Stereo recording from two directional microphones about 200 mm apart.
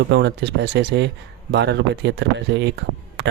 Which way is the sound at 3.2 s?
60° right (ahead or behind).